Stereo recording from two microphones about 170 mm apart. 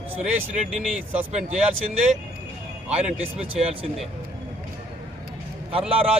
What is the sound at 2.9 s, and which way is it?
Speech, 35° right (ahead or behind).